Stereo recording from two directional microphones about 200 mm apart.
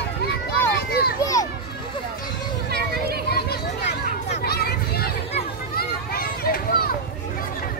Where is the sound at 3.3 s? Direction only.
55° left (ahead or behind).